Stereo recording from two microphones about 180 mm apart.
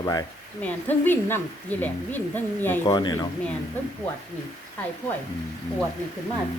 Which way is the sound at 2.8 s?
20° left (ahead or behind).